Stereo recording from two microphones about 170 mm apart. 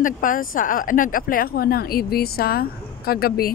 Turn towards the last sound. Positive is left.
turn(degrees=65)  # may be behind; listen again after turning